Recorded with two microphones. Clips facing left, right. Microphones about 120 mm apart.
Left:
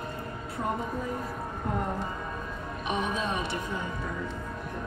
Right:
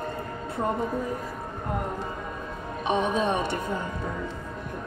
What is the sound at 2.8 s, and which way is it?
Speech, 25° right (ahead or behind).